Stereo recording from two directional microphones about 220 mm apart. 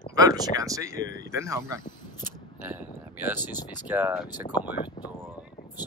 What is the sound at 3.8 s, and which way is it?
Speech, 5° right (ahead or behind).